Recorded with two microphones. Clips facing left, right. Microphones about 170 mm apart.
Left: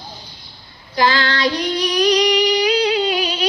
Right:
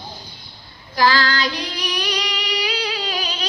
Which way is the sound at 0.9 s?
20° left (ahead or behind).